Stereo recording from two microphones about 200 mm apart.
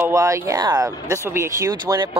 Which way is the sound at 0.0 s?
15° right (ahead or behind).